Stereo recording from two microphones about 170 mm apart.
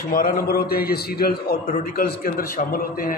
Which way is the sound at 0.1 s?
60° left (ahead or behind).